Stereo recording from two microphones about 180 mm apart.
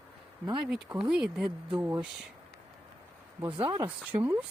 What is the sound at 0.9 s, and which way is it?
Speech, 5° right (ahead or behind).